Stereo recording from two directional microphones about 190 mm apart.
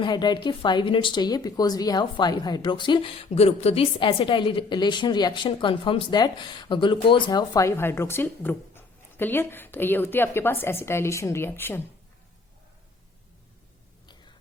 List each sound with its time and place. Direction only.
0.0 s a woman's voice: 25° left (ahead or behind)